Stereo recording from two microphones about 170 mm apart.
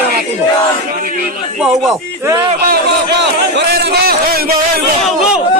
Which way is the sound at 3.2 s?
85° right.